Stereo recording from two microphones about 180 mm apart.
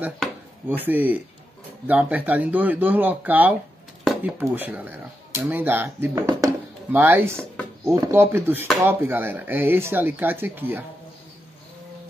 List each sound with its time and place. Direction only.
0.7 s speech: 10° right (ahead or behind)
4.0 s a sound: centre (ahead or behind)
4.4 s speech: 10° right (ahead or behind)